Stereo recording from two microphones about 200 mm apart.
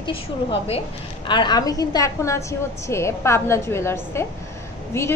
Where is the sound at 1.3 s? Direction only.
20° left (ahead or behind).